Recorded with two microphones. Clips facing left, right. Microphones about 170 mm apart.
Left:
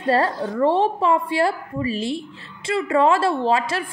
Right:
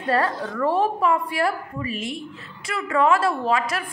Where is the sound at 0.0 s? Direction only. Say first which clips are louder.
Left 3 dB; 30° left (ahead or behind).